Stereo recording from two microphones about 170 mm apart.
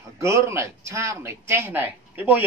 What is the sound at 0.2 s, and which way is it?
Speech, 15° right (ahead or behind).